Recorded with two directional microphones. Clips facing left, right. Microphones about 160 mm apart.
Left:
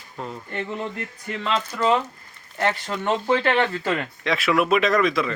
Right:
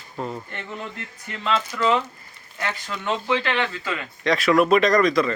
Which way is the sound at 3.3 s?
40° left (ahead or behind).